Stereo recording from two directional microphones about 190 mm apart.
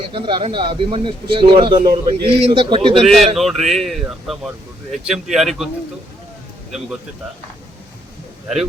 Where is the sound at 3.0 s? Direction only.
Centre (ahead or behind).